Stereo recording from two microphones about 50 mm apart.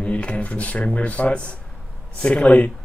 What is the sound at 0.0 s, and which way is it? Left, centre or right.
Speech, left.